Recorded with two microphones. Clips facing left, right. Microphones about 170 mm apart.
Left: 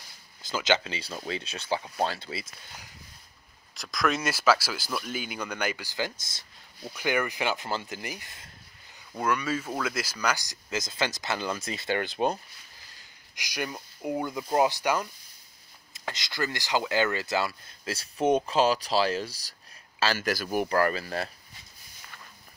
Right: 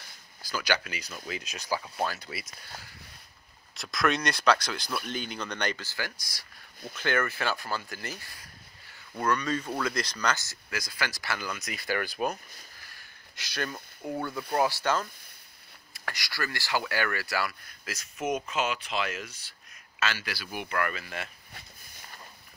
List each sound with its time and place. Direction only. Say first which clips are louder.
0.4 s speech: left 4 dB; 20° left (ahead or behind)
3.7 s speech: even; centre (ahead or behind); by 6.4 s 20° left (ahead or behind)
6.9 s speech: left 1 dB; 10° left (ahead or behind)
12.9 s a sound: even; 15° left (ahead or behind)
14.5 s speech: left 2 dB; 20° left (ahead or behind); by 19.5 s 35° left (ahead or behind)
20.2 s speech: left 10 dB; 45° left (ahead or behind)